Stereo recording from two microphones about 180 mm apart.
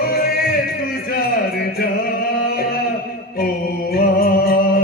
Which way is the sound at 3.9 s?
55° left (ahead or behind).